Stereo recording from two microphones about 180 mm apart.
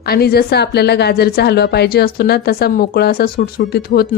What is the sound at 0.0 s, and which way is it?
A woman's voice, 60° left (ahead or behind).